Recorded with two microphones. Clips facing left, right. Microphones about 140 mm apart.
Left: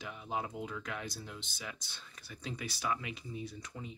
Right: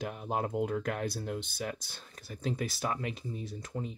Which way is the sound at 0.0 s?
50° right (ahead or behind).